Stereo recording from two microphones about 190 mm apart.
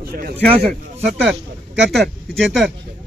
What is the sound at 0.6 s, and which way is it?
Speech, centre (ahead or behind).